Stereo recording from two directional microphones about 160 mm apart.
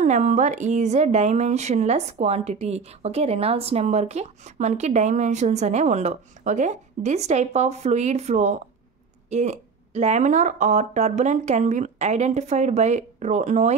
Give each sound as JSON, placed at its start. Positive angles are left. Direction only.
{"t": 0.0, "sound": "a woman's voice", "side_deg": -50}